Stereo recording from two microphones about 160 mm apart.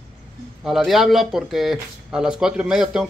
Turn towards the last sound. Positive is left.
turn(degrees=-5)  # may be behind; listen again after turning